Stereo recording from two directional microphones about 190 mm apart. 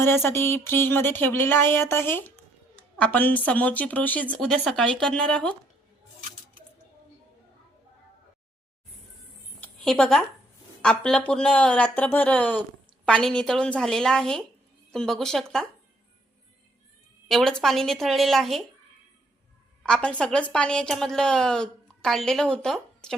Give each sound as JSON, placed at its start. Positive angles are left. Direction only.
{"t": 0.0, "sound": "a woman's voice", "side_deg": 10}
{"t": 9.6, "sound": "a sound", "side_deg": 5}
{"t": 10.8, "sound": "a woman's voice", "side_deg": 5}
{"t": 17.2, "sound": "a woman's voice", "side_deg": 0}
{"t": 19.8, "sound": "a woman's voice", "side_deg": 5}